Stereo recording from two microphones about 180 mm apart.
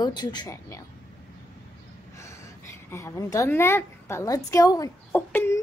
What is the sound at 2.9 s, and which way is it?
A woman's voice, 15° left (ahead or behind).